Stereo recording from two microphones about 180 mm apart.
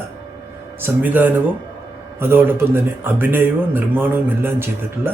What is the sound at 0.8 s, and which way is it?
Speech, 10° right (ahead or behind).